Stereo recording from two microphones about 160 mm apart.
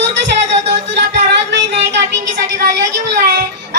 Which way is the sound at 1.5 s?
90° right.